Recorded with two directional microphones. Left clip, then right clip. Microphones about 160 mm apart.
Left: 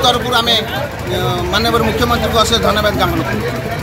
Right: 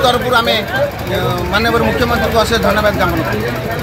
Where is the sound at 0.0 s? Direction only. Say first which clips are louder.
Right 1 dB; 10° right (ahead or behind).